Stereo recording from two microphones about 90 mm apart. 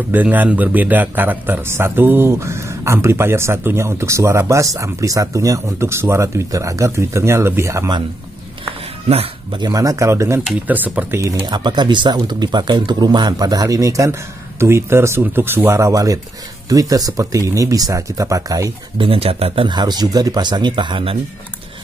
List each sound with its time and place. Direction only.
0.1 s a man's voice: 20° right (ahead or behind)
9.1 s speech: 90° right
9.6 s a man's voice: 40° right (ahead or behind)
10.7 s speech: 20° right (ahead or behind)
11.1 s a man's voice: 35° right (ahead or behind)
11.4 s a man's voice: 50° right (ahead or behind)
18.9 s speech: 90° right
19.7 s speech: 50° right (ahead or behind); by 21.2 s 75° right (ahead or behind)